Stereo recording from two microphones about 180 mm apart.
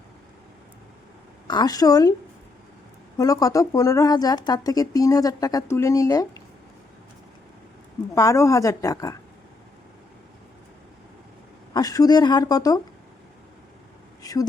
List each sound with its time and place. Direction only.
1.5 s speech: 20° left (ahead or behind)
3.2 s speech: 20° left (ahead or behind)
8.1 s speech: 15° left (ahead or behind)
11.7 s speech: 20° left (ahead or behind)
14.2 s speech: 20° left (ahead or behind)